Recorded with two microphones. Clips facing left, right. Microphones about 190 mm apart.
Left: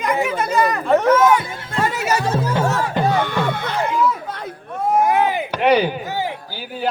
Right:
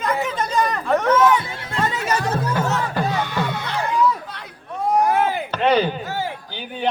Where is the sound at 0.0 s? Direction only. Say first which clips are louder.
Left 3 dB; 10° left (ahead or behind).